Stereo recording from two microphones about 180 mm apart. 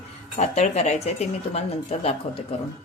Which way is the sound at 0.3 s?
40° left (ahead or behind).